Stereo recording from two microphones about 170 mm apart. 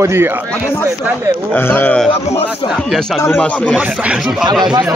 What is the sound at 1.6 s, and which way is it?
A man's voice, 10° left (ahead or behind).